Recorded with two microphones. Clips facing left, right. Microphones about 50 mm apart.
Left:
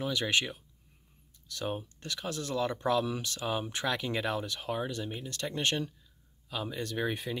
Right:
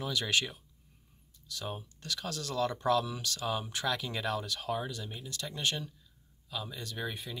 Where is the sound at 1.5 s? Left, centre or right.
Left.